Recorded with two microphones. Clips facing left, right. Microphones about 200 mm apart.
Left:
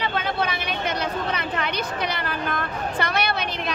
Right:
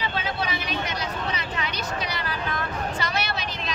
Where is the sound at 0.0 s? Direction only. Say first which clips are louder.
Left 3 dB; 55° left (ahead or behind).